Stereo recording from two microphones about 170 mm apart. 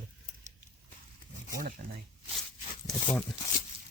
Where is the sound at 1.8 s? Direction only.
60° right (ahead or behind).